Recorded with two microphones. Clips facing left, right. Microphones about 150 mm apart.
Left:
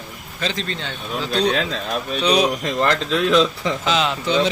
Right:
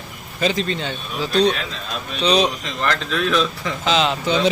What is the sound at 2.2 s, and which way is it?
Speech, 10° left (ahead or behind).